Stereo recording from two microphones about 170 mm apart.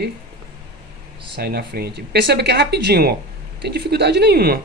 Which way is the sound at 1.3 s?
65° right (ahead or behind).